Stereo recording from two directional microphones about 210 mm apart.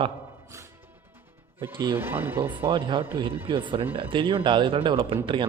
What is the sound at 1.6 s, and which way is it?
Speech, 10° right (ahead or behind).